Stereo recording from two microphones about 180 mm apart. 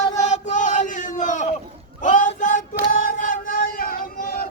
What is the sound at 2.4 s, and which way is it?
Child singing, 45° left (ahead or behind).